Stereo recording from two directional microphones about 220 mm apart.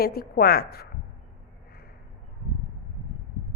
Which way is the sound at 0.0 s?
45° left (ahead or behind).